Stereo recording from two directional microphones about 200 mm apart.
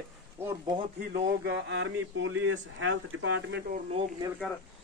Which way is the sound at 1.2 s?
60° right (ahead or behind).